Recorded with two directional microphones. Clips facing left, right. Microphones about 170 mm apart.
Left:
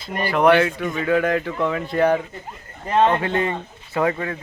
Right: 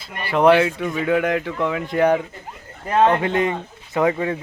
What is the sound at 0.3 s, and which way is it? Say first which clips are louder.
Speech: right 2 dB; 25° right (ahead or behind).